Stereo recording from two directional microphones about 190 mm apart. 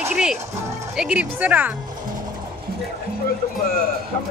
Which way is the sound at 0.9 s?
5° right (ahead or behind).